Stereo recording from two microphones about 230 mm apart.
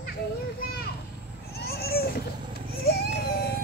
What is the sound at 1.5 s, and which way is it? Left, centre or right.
Babbling, left.